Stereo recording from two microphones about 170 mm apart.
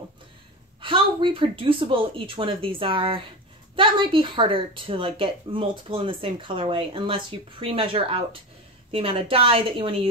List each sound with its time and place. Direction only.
0.7 s a woman's voice: 30° right (ahead or behind)